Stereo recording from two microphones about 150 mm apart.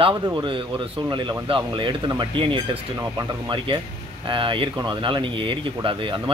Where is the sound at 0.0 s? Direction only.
30° right (ahead or behind).